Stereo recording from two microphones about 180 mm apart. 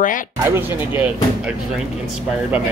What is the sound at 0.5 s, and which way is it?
Speech, 10° right (ahead or behind).